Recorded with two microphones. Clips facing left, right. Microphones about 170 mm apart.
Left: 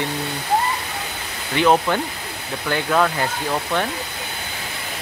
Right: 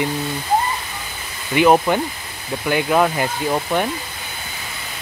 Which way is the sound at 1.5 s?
10° right (ahead or behind).